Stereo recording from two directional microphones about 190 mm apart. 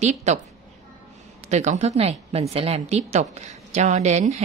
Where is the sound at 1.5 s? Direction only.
35° right (ahead or behind).